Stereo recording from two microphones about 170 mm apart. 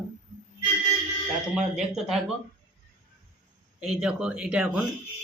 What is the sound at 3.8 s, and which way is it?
Speech, 5° right (ahead or behind).